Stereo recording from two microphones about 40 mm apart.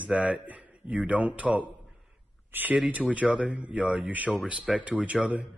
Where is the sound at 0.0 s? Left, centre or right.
Right.